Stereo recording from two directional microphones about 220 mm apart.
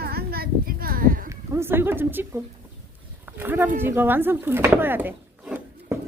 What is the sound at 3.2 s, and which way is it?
Speech, 10° right (ahead or behind).